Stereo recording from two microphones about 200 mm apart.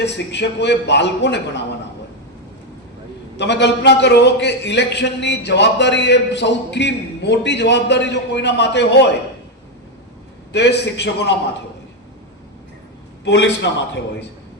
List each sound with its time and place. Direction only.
0.0 s a man's voice: 60° left (ahead or behind)
3.3 s a man's voice: 60° left (ahead or behind)
10.5 s a man's voice: 60° left (ahead or behind)
13.2 s a man's voice: 60° left (ahead or behind)